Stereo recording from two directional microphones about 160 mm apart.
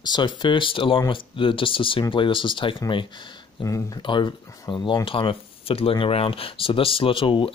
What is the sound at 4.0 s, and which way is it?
Speech, 30° left (ahead or behind).